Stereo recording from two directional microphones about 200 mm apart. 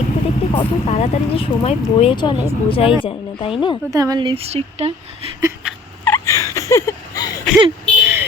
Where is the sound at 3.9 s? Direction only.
20° right (ahead or behind).